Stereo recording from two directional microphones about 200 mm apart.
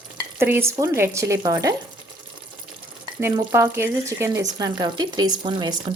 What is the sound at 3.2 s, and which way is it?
Speech, 15° right (ahead or behind).